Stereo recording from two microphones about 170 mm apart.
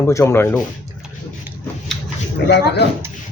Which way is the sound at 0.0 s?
15° left (ahead or behind).